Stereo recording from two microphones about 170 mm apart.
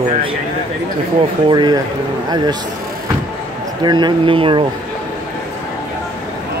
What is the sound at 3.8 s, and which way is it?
Speech, 25° right (ahead or behind).